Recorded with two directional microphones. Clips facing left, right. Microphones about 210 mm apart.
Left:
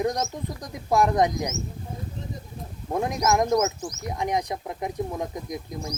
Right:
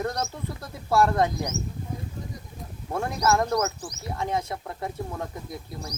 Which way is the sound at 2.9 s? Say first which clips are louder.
Left 1 dB; 15° left (ahead or behind).